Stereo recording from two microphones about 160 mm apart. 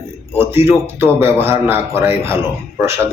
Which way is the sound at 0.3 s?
15° right (ahead or behind).